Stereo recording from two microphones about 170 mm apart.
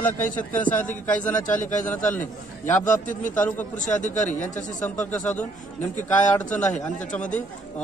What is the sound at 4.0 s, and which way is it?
Speech, 45° left (ahead or behind).